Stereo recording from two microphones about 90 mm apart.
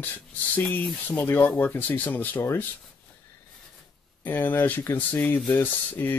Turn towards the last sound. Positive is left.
turn(degrees=20)  # may be behind; listen again after turning